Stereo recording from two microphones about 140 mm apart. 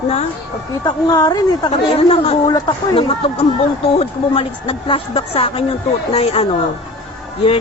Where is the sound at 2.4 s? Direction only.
30° left (ahead or behind).